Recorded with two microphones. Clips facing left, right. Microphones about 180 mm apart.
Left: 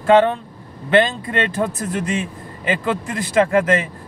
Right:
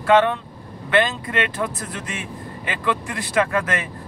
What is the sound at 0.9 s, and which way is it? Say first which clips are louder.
Speech: left 4 dB; 30° left (ahead or behind).